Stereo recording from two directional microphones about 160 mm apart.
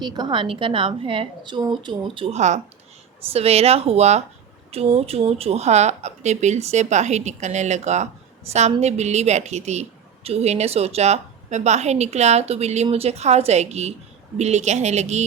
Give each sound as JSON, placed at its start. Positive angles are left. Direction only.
{"t": 0.0, "sound": "a woman's voice", "side_deg": -25}